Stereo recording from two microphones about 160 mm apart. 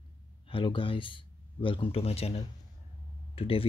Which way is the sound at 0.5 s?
30° left (ahead or behind).